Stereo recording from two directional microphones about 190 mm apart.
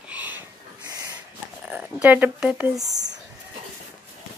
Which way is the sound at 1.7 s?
5° right (ahead or behind).